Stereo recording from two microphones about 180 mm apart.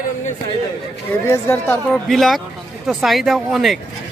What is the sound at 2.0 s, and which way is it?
Speech, centre (ahead or behind).